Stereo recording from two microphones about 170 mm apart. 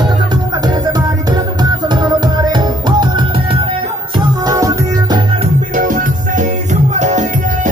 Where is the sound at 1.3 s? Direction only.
25° right (ahead or behind).